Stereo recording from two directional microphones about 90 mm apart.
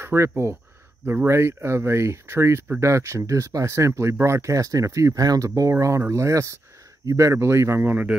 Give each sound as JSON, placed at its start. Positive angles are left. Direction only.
{"t": 0.0, "sound": "speech", "side_deg": -30}